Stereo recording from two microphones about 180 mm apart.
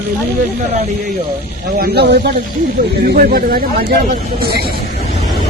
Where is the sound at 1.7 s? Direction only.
60° right (ahead or behind).